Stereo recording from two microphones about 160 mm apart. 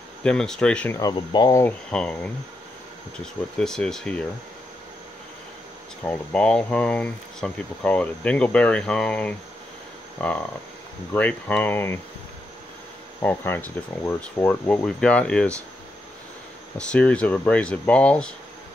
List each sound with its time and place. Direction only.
0.2 s speech: 5° left (ahead or behind)
0.9 s speech: 25° left (ahead or behind)
1.6 s speech: 10° left (ahead or behind)
3.5 s speech: 5° left (ahead or behind)
6.0 s speech: 5° left (ahead or behind)
13.2 s speech: 15° left (ahead or behind)
16.7 s speech: 5° left (ahead or behind)